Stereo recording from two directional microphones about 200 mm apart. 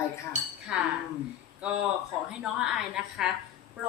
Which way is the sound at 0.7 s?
5° right (ahead or behind).